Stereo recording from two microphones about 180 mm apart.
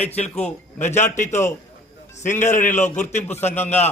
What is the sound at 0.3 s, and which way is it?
Speech, 10° left (ahead or behind).